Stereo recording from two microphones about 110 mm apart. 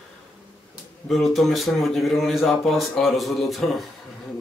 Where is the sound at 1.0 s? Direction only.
Centre (ahead or behind).